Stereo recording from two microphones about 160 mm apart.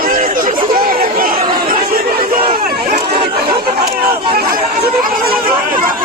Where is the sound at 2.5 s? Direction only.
65° right (ahead or behind).